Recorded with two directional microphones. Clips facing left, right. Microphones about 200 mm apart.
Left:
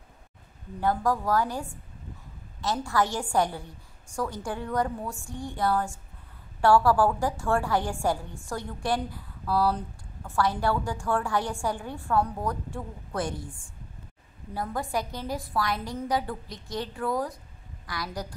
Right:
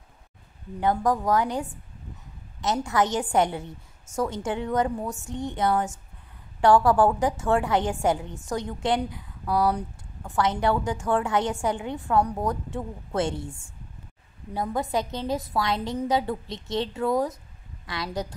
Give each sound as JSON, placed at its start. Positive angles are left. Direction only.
{"t": 0.7, "sound": "a woman's voice", "side_deg": -20}